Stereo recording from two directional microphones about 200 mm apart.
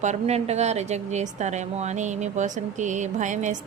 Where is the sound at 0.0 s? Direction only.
35° right (ahead or behind).